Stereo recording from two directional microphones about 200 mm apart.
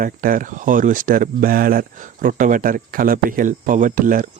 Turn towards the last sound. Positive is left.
turn(degrees=-45)  # may be behind; listen again after turning